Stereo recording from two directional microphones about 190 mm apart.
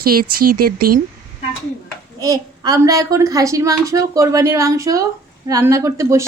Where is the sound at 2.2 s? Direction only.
20° right (ahead or behind).